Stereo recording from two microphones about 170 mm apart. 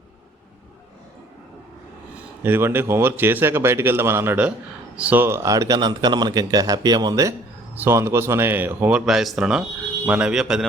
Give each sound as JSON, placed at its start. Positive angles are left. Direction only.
{"t": 2.4, "sound": "a man's voice", "side_deg": -15}